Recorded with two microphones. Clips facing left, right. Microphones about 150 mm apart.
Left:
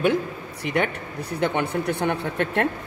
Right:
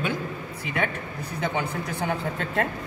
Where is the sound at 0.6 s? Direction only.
75° left (ahead or behind).